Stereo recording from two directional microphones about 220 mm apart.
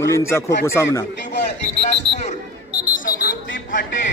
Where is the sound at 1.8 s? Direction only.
30° left (ahead or behind).